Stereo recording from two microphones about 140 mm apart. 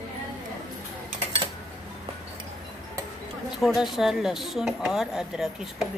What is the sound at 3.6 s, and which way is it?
Speech, centre (ahead or behind).